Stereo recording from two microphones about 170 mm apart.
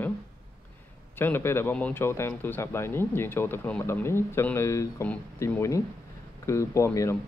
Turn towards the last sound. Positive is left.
turn(degrees=15)  # may be behind; listen again after turning